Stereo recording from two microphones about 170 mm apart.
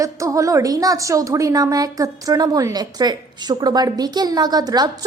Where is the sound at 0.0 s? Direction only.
20° right (ahead or behind).